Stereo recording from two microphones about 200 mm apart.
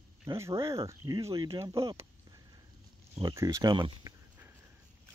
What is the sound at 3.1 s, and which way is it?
Speech, 20° right (ahead or behind).